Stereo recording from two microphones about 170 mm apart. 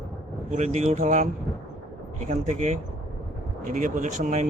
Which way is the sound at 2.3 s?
40° right (ahead or behind).